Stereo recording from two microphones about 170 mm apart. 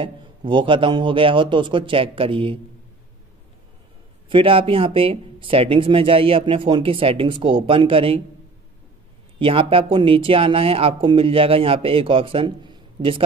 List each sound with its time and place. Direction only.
0.0 s a man's voice: 30° right (ahead or behind)
4.3 s speech: 30° right (ahead or behind)
9.4 s speech: 30° right (ahead or behind)